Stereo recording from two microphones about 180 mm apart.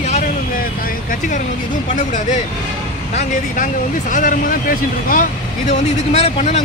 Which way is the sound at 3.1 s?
45° left (ahead or behind).